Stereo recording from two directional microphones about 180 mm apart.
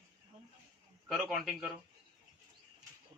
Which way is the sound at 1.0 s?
Centre (ahead or behind).